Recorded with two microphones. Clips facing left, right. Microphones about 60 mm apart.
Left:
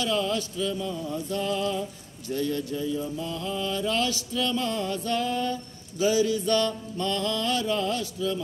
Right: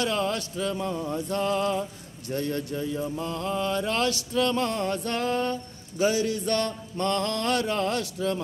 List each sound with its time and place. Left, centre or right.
0.0 s music: right